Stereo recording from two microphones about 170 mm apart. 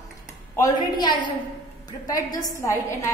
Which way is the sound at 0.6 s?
25° left (ahead or behind).